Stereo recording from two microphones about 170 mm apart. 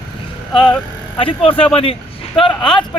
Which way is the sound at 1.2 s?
35° left (ahead or behind).